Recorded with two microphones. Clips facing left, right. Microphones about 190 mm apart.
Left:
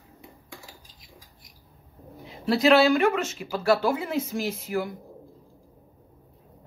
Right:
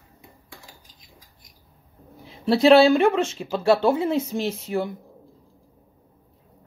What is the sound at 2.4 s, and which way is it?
Speech, 30° right (ahead or behind).